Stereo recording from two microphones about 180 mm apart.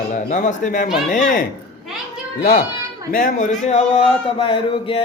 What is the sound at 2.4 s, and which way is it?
A man's voice, 45° left (ahead or behind).